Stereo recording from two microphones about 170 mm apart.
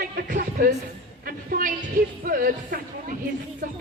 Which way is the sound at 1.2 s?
55° right (ahead or behind).